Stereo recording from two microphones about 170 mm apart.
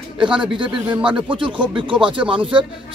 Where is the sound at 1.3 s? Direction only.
30° right (ahead or behind).